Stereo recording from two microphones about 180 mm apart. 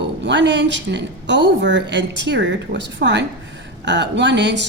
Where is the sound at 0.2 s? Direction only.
80° right.